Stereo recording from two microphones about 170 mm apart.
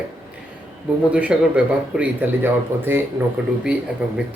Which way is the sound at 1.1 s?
5° right (ahead or behind).